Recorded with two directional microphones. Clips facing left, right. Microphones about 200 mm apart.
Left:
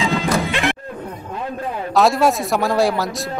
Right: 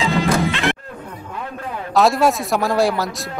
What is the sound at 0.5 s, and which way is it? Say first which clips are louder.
Music: even; 15° left (ahead or behind).